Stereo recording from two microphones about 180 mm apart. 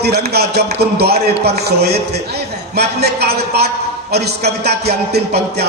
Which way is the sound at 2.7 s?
60° right (ahead or behind).